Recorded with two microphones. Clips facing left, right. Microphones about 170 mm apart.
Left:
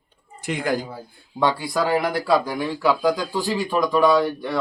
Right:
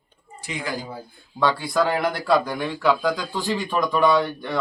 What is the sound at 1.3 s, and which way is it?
Speech, 20° left (ahead or behind).